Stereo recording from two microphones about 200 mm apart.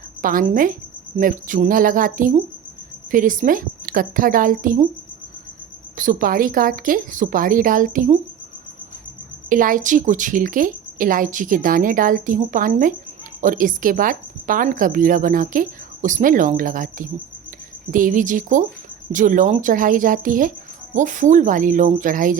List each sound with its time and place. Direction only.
0.2 s a woman's voice: 45° right (ahead or behind)
6.0 s a woman's voice: 45° right (ahead or behind)
9.5 s a woman's voice: 40° right (ahead or behind)